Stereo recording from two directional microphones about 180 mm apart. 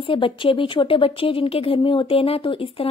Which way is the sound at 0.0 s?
30° left (ahead or behind).